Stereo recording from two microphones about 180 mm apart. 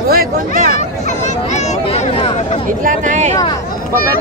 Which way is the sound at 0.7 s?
40° left (ahead or behind).